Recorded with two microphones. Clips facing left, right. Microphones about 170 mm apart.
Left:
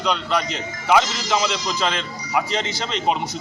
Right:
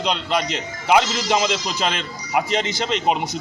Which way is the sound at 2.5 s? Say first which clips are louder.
Right 3 dB; 15° right (ahead or behind).